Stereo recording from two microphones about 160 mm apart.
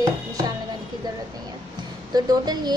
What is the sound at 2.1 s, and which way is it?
Speech, 25° right (ahead or behind).